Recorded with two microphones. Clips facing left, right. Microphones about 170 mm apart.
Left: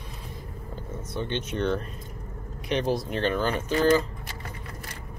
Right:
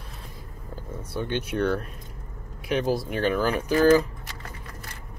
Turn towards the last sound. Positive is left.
turn(degrees=-10)  # may be behind; listen again after turning